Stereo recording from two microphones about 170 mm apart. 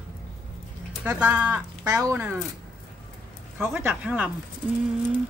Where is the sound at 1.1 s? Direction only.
5° right (ahead or behind).